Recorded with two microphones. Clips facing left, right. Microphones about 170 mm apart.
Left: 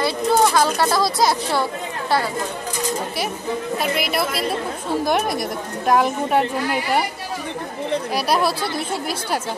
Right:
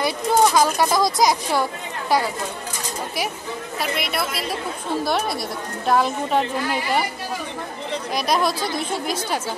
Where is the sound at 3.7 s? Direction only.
Centre (ahead or behind).